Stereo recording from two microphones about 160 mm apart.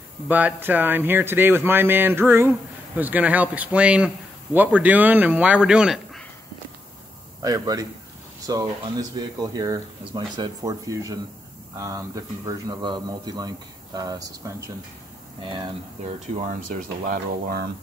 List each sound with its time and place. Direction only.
0.3 s speech: 10° right (ahead or behind)
7.4 s a man's voice: 25° right (ahead or behind)
16.4 s speech: 55° right (ahead or behind)